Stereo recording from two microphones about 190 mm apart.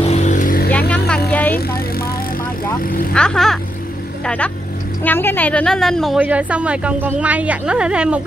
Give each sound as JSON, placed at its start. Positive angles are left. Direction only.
{"t": 0.0, "sound": "vehicle", "side_deg": 35}
{"t": 0.7, "sound": "vehicle", "side_deg": 10}
{"t": 3.1, "sound": "a woman's voice", "side_deg": 5}